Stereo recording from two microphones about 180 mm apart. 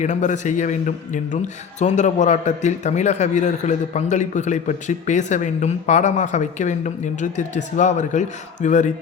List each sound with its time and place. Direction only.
0.0 s a man's voice: 40° left (ahead or behind)